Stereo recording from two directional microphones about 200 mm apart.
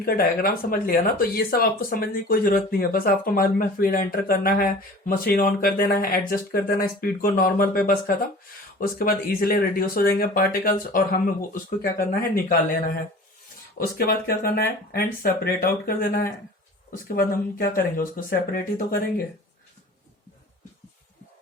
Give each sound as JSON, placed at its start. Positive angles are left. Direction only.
{"t": 0.0, "sound": "speech", "side_deg": 50}
{"t": 13.7, "sound": "speech", "side_deg": 50}